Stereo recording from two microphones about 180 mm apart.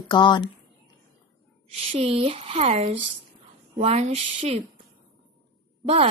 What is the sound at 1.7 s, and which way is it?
A woman's voice, 35° right (ahead or behind).